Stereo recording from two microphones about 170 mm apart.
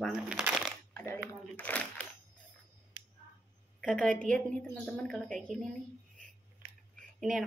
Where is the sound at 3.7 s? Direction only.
5° left (ahead or behind).